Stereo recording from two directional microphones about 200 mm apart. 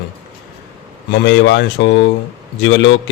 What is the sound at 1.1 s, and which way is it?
A man's voice, 60° left (ahead or behind).